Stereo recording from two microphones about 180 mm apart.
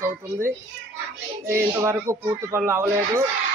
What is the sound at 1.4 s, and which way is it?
Speech, 15° right (ahead or behind).